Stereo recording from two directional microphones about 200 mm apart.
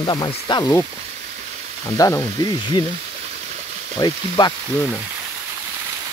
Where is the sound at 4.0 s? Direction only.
20° left (ahead or behind).